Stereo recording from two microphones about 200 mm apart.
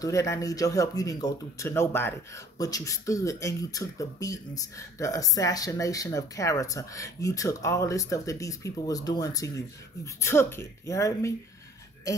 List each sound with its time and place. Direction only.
0.0 s speech: 15° left (ahead or behind)